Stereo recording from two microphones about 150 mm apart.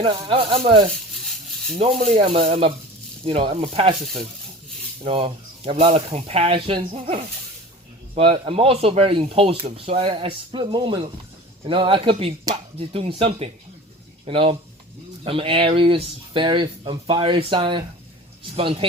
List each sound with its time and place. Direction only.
0.0 s speech: 35° right (ahead or behind)
2.1 s speech: 40° right (ahead or behind)
5.0 s speech: 40° right (ahead or behind)